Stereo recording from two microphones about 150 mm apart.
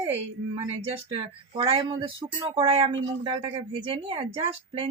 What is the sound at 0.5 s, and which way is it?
Speech, 40° right (ahead or behind).